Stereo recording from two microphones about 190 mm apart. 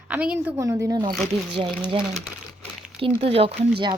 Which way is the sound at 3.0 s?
30° right (ahead or behind).